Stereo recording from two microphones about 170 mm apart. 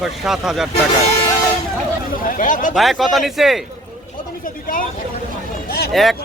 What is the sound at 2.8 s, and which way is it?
Speech, centre (ahead or behind).